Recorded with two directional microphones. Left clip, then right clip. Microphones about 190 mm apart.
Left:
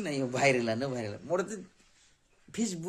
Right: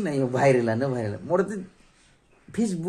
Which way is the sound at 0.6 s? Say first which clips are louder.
Right 7 dB; 5° left (ahead or behind).